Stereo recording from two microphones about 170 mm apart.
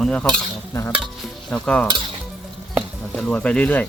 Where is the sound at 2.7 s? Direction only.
Centre (ahead or behind).